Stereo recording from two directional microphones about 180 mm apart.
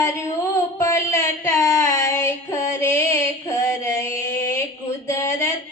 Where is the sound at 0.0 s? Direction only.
15° left (ahead or behind).